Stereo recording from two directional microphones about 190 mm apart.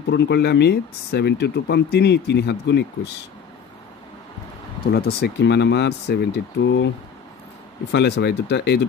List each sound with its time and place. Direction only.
0.1 s speech: 60° left (ahead or behind)
4.9 s speech: 55° left (ahead or behind)
7.9 s speech: 60° left (ahead or behind)